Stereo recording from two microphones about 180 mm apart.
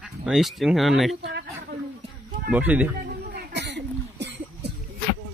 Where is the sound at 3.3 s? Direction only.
70° right (ahead or behind).